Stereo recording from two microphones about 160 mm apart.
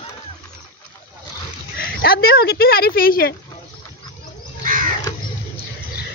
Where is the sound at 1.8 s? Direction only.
70° left (ahead or behind).